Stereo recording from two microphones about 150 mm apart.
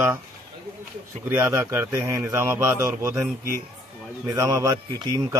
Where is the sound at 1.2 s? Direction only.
15° right (ahead or behind).